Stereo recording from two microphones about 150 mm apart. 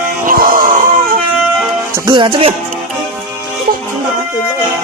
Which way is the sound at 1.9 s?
30° right (ahead or behind).